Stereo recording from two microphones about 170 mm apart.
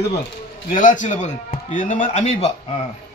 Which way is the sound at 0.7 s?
50° left (ahead or behind).